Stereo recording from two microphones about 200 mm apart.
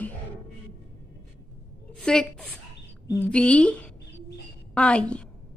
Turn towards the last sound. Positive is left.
turn(degrees=5)  # may be behind; listen again after turning